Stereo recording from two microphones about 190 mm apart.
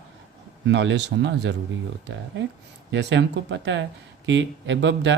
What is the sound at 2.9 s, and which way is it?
Speech, 70° right (ahead or behind).